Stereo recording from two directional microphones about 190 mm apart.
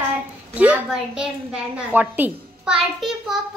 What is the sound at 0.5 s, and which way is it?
A woman's voice, 5° right (ahead or behind).